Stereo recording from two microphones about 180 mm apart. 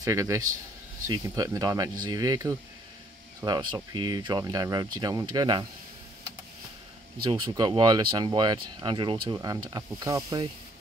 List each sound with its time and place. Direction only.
0.0 s a man's voice: 15° right (ahead or behind)
7.2 s speech: 25° right (ahead or behind)